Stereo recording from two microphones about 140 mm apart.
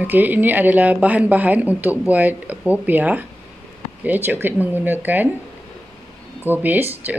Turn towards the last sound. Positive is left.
turn(degrees=-15)  # may be behind; listen again after turning